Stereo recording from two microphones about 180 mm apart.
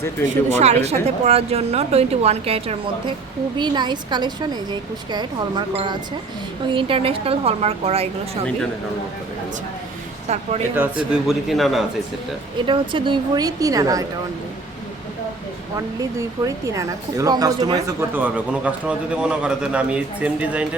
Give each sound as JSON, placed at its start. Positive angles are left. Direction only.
{"t": 0.6, "sound": "a woman's voice", "side_deg": -35}
{"t": 10.2, "sound": "a woman's voice", "side_deg": -40}
{"t": 10.8, "sound": "speech", "side_deg": -5}
{"t": 12.6, "sound": "a woman's voice", "side_deg": -25}
{"t": 16.0, "sound": "a woman's voice", "side_deg": -20}
{"t": 18.1, "sound": "speech", "side_deg": -10}